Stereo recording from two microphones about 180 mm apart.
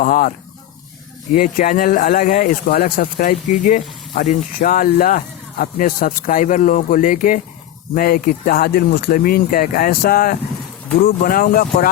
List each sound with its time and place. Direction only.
0.0 s speech: 50° left (ahead or behind)